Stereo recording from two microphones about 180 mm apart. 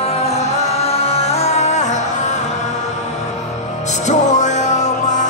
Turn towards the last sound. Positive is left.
turn(degrees=40)  # may be behind; listen again after turning